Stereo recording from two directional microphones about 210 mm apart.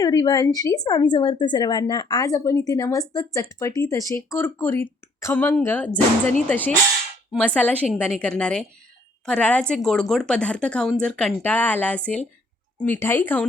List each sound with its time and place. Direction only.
0.0 s a woman's voice: 20° left (ahead or behind)